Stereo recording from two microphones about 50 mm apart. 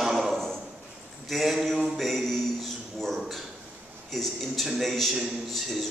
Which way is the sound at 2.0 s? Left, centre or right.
Centre.